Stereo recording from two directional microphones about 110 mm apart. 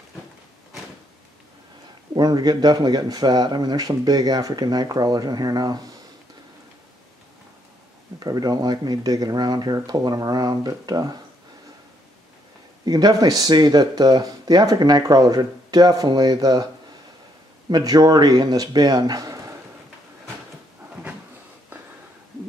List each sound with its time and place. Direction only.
2.1 s speech: 40° right (ahead or behind)
8.2 s speech: 35° right (ahead or behind)
12.8 s speech: 35° right (ahead or behind)
17.6 s speech: 40° right (ahead or behind)